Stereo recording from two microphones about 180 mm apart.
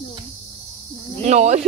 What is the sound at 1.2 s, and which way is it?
Speech, 40° right (ahead or behind).